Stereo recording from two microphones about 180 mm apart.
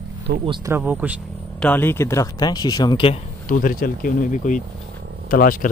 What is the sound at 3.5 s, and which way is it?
Speech, 50° left (ahead or behind).